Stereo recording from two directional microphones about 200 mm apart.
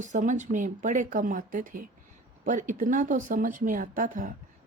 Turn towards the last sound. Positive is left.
turn(degrees=-40)  # may be behind; listen again after turning